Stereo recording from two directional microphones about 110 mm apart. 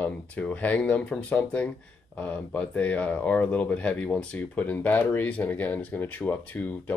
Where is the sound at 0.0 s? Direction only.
10° left (ahead or behind).